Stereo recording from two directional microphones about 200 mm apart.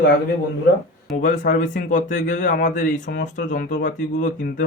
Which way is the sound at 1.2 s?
40° left (ahead or behind).